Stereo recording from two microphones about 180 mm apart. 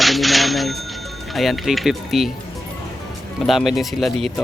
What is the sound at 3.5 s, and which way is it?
Speech, centre (ahead or behind).